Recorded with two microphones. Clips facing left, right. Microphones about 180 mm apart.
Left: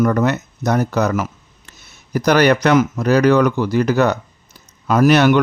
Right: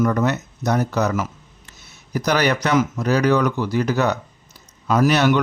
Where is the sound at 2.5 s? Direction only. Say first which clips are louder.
Left 5 dB; 55° left (ahead or behind).